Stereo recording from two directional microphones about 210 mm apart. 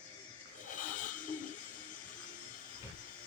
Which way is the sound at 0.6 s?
40° left (ahead or behind).